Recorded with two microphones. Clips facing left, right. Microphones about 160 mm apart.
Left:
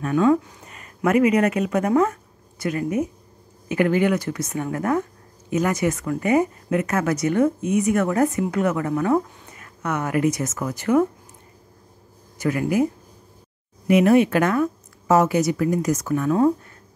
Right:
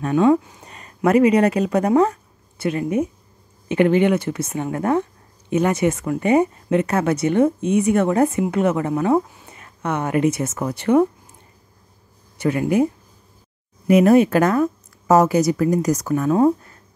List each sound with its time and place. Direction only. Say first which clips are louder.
0.0 s speech: right 2 dB; 25° right (ahead or behind)
12.4 s speech: right 3 dB; 25° right (ahead or behind)
13.8 s speech: right 3 dB; 40° right (ahead or behind)